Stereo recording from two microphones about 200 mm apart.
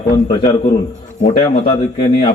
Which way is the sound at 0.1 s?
20° left (ahead or behind).